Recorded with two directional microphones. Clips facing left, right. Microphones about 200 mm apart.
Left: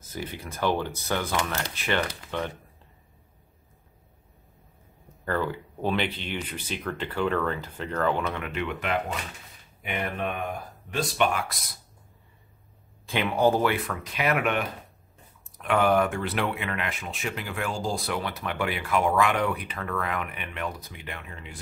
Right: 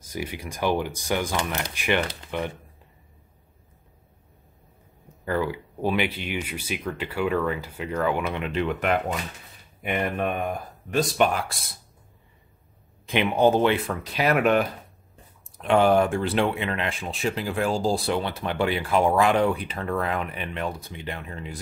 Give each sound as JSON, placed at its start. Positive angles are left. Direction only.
{"t": 0.1, "sound": "speech", "side_deg": -10}
{"t": 5.2, "sound": "speech", "side_deg": -10}
{"t": 8.5, "sound": "speech", "side_deg": -40}
{"t": 9.8, "sound": "speech", "side_deg": -50}
{"t": 13.0, "sound": "speech", "side_deg": -20}